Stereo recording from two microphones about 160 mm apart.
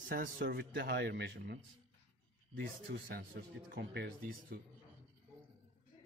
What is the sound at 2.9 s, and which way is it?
Speech, 90° right.